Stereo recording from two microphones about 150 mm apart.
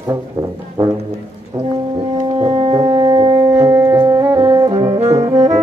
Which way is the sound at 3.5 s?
15° right (ahead or behind).